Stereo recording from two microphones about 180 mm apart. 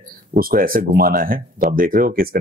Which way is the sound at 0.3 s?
55° right (ahead or behind).